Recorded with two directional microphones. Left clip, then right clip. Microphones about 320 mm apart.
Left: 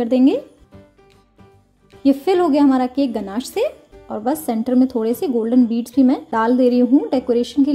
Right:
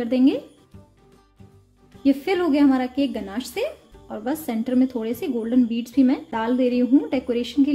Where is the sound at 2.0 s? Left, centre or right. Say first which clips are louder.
Left 5 dB; centre.